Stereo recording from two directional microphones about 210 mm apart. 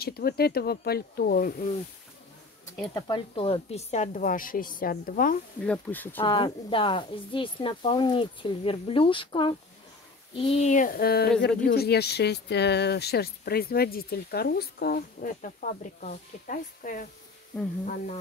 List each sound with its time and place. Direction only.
0.0 s speech: 45° left (ahead or behind)
2.9 s a woman's voice: 25° left (ahead or behind); by 5.4 s 40° left (ahead or behind)
5.7 s speech: 10° left (ahead or behind)
6.2 s a woman's voice: 25° left (ahead or behind); by 17.0 s 40° left (ahead or behind)
17.5 s speech: 5° left (ahead or behind)